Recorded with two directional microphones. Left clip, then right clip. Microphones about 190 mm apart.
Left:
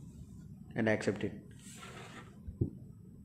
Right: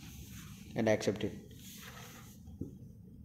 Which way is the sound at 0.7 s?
5° right (ahead or behind).